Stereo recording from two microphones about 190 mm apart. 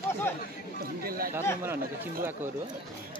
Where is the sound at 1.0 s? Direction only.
50° right (ahead or behind).